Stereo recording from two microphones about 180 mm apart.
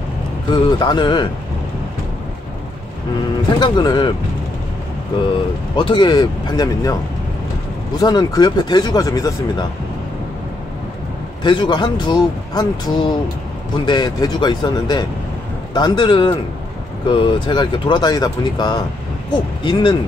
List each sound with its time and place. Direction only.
0.5 s speech: 25° left (ahead or behind)
3.5 s speech: 25° left (ahead or behind)
5.8 s speech: 25° left (ahead or behind)
8.0 s speech: 20° left (ahead or behind)
11.4 s speech: 25° left (ahead or behind)